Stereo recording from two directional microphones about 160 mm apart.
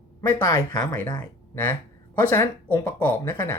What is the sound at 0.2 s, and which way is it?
Speech, 20° left (ahead or behind).